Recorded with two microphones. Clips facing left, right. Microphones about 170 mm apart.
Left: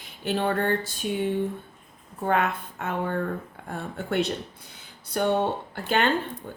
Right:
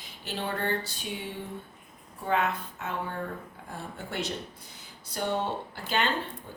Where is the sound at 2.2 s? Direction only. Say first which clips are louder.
Left 3 dB; 55° left (ahead or behind).